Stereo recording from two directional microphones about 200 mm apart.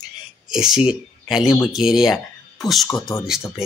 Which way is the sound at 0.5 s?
5° right (ahead or behind).